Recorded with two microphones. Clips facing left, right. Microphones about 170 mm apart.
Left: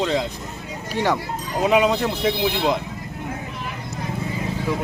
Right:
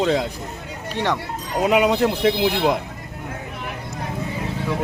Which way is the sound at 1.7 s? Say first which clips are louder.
Right 1 dB; 10° right (ahead or behind).